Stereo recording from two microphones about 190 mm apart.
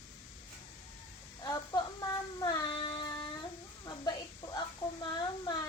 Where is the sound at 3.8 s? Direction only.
20° left (ahead or behind).